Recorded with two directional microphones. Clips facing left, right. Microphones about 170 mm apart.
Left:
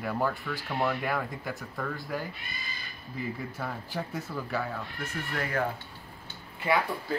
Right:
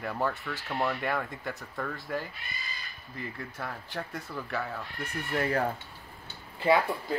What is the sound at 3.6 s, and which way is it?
Speech, centre (ahead or behind).